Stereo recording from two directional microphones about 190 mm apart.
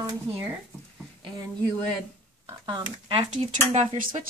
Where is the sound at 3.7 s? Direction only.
40° right (ahead or behind).